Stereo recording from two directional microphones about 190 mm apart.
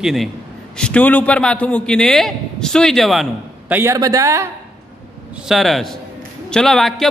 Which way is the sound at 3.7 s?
15° right (ahead or behind).